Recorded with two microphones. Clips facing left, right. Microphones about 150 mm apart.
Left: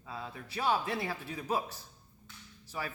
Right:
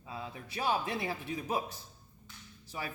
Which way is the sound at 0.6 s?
20° right (ahead or behind).